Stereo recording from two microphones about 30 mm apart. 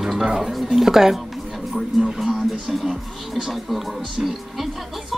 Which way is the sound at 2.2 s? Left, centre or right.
Right.